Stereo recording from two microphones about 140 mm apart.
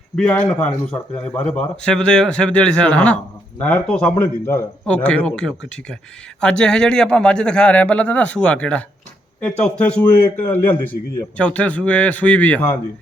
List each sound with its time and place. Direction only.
0.2 s a man's voice: 10° left (ahead or behind)